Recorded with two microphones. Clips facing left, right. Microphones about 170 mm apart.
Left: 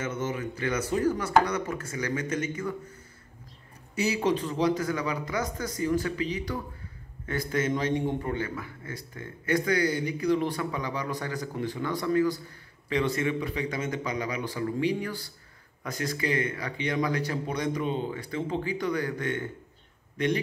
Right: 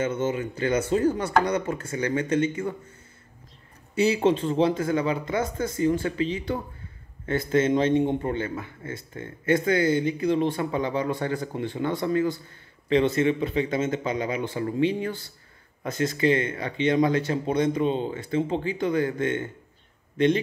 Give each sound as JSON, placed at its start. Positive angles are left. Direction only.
{"t": 0.0, "sound": "a man's voice", "side_deg": -30}
{"t": 3.9, "sound": "a man's voice", "side_deg": -25}